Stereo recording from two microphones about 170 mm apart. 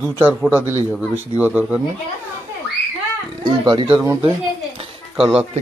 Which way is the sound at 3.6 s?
30° right (ahead or behind).